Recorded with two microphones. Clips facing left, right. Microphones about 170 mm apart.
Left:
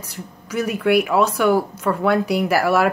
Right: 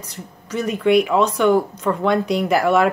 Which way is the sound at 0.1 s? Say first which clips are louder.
Left 1 dB; 10° left (ahead or behind).